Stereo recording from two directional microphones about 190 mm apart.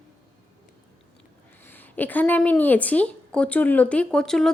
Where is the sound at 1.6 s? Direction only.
10° left (ahead or behind).